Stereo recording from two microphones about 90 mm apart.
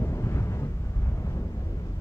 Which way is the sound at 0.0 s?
30° left (ahead or behind).